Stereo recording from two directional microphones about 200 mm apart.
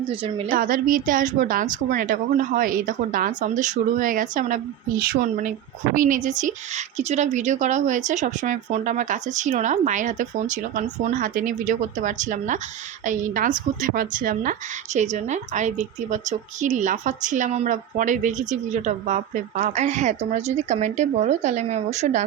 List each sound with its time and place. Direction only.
0.1 s a woman's voice: 25° right (ahead or behind)
0.5 s a woman's voice: 45° right (ahead or behind)